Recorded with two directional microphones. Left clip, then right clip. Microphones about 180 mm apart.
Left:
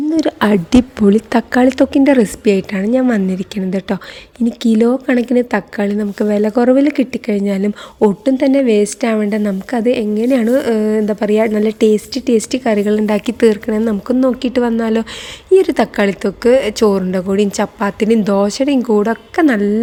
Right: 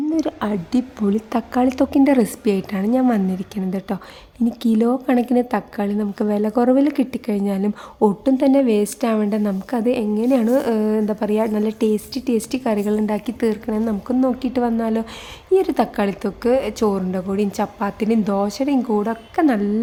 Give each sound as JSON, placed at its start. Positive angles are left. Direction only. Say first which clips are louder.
{"t": 0.1, "sound": "a woman's voice", "louder": "left 8 dB", "side_deg": 20}